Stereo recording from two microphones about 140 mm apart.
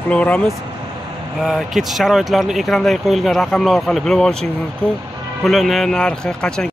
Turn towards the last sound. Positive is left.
turn(degrees=5)  # may be behind; listen again after turning